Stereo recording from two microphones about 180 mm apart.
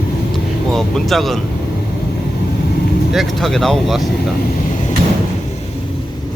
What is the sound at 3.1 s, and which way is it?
Speech, centre (ahead or behind).